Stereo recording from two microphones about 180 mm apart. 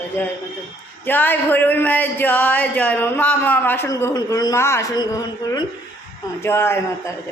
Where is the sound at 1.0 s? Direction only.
10° left (ahead or behind).